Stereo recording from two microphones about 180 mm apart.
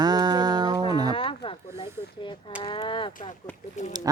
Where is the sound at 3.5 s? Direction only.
10° left (ahead or behind).